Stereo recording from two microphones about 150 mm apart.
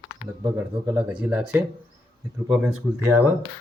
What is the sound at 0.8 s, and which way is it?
Speech, 10° right (ahead or behind).